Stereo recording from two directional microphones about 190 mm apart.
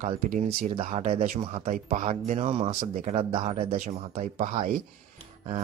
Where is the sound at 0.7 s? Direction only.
30° right (ahead or behind).